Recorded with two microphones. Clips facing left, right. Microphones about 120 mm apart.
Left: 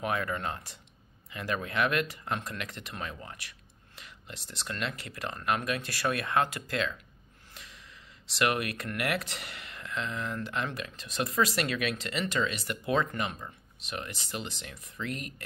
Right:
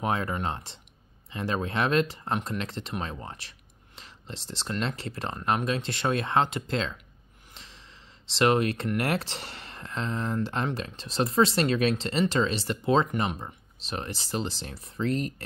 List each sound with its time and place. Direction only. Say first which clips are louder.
0.0 s speech: right 3 dB; 30° right (ahead or behind)
7.5 s gasp: right 1 dB; 30° right (ahead or behind)
8.3 s speech: right 6 dB; 30° right (ahead or behind)